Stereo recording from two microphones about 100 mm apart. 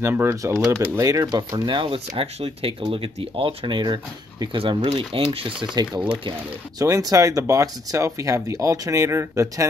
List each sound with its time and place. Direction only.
0.0 s speech: 25° right (ahead or behind); by 5.7 s 60° right (ahead or behind)
6.8 s speech: 35° right (ahead or behind)